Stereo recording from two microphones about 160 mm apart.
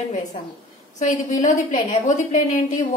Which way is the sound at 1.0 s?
50° left (ahead or behind).